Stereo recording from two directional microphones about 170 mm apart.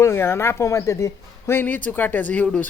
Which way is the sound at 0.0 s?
15° left (ahead or behind).